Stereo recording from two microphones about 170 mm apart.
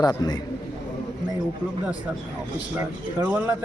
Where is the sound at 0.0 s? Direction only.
25° left (ahead or behind).